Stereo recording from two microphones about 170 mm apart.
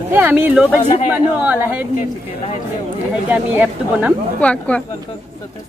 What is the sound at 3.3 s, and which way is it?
Speech, 10° right (ahead or behind).